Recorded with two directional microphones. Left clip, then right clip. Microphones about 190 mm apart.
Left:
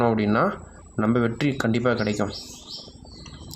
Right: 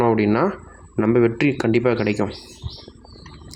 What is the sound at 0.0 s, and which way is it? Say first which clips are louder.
Speech: right 3 dB; 30° right (ahead or behind).